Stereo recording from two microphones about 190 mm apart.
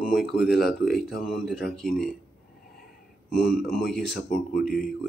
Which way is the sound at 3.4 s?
50° left (ahead or behind).